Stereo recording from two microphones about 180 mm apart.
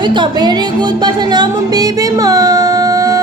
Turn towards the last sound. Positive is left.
turn(degrees=-20)  # may be behind; listen again after turning